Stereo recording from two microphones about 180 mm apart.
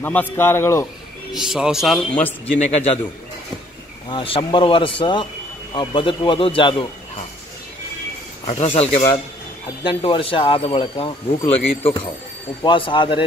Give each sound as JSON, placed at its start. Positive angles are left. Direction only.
{"t": 0.0, "sound": "a man's voice", "side_deg": 10}
{"t": 1.3, "sound": "speech", "side_deg": -5}
{"t": 2.4, "sound": "speech", "side_deg": 35}
{"t": 4.1, "sound": "speech", "side_deg": 30}
{"t": 8.5, "sound": "speech", "side_deg": 35}